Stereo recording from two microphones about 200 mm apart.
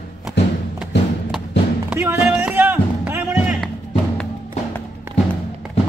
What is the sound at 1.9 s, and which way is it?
Music, 10° right (ahead or behind).